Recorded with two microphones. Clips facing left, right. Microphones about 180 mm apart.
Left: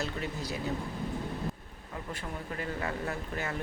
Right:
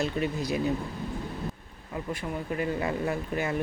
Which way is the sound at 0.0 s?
15° right (ahead or behind).